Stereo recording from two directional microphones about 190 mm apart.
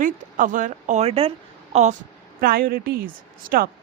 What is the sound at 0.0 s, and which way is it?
Speech, 45° right (ahead or behind).